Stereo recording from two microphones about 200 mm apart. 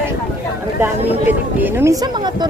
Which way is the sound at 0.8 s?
10° right (ahead or behind).